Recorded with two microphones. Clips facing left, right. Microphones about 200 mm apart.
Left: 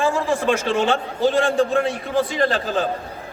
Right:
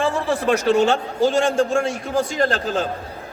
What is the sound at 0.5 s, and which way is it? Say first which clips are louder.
A man's voice: right 6 dB; 40° right (ahead or behind).